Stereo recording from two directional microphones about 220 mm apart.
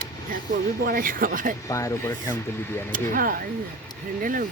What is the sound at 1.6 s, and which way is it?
Speech, 15° left (ahead or behind).